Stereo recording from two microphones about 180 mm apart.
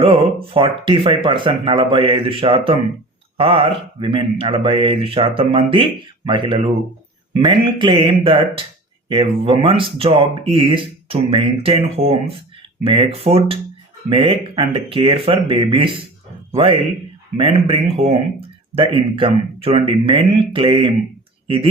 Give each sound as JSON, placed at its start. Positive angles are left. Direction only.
{"t": 0.0, "sound": "speech", "side_deg": -30}
{"t": 17.3, "sound": "speech", "side_deg": -30}